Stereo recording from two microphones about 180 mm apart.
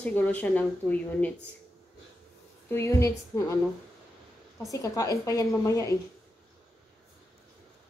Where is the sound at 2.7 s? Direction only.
15° left (ahead or behind).